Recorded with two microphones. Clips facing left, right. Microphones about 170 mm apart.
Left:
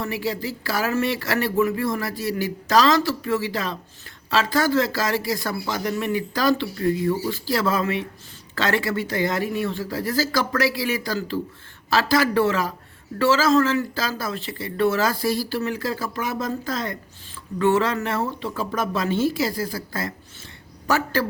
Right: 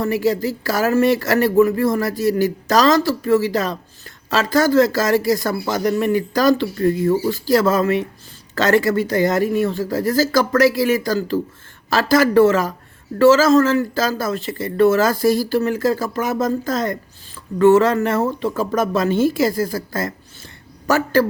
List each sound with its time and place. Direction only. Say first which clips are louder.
0.0 s speech: right 8 dB; 45° right (ahead or behind)